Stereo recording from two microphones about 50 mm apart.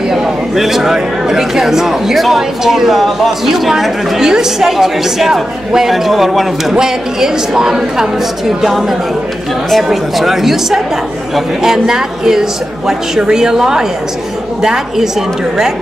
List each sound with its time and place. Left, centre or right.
0.1 s a woman's voice: centre